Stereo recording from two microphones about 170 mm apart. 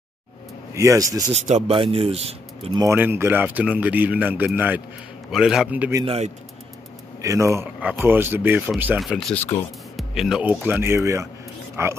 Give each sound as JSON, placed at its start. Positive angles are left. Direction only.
{"t": 0.7, "sound": "speech", "side_deg": -20}
{"t": 1.3, "sound": "speech", "side_deg": -35}
{"t": 2.7, "sound": "a man's voice", "side_deg": -15}
{"t": 6.0, "sound": "speech", "side_deg": -40}
{"t": 7.2, "sound": "speech", "side_deg": -20}